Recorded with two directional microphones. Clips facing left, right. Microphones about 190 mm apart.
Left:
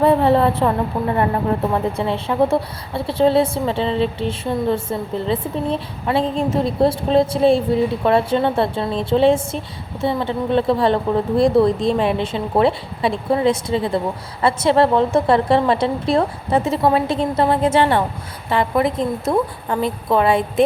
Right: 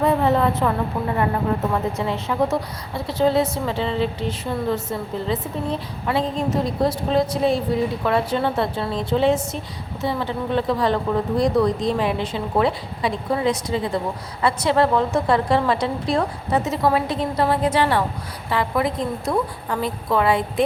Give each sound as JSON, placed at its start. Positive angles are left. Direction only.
{"t": 0.0, "sound": "a woman's voice", "side_deg": 30}